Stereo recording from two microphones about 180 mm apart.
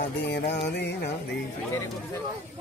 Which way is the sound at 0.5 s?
70° left (ahead or behind).